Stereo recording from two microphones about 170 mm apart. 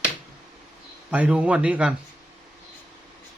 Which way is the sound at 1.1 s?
5° right (ahead or behind).